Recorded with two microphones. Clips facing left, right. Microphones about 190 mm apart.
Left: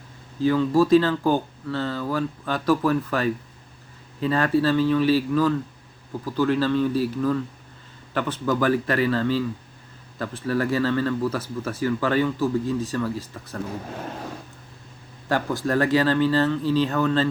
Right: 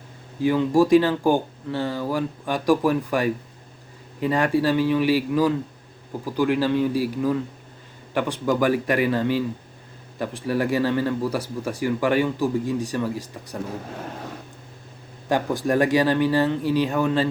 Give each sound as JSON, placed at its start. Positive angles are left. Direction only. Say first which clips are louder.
{"t": 0.4, "sound": "speech", "louder": "right 1 dB", "side_deg": -15}
{"t": 15.3, "sound": "speech", "louder": "right 2 dB", "side_deg": -15}